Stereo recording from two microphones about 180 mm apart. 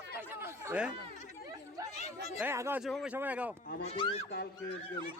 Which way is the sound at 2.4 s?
15° right (ahead or behind).